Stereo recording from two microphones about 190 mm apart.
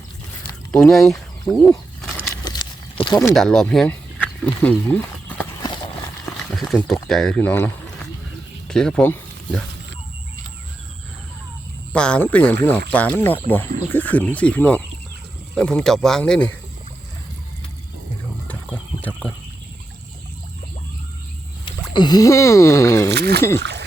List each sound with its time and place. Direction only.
0.7 s a sound: centre (ahead or behind); by 3.3 s 20° left (ahead or behind)
3.3 s speech: centre (ahead or behind)
6.2 s a sound: 5° left (ahead or behind)
6.7 s speech: 5° left (ahead or behind)
11.9 s speech: 5° left (ahead or behind)
21.6 s speech: 25° left (ahead or behind)
23.1 s speech: 60° right (ahead or behind)